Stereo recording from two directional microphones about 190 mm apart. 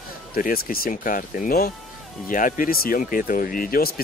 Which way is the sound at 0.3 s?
50° left (ahead or behind).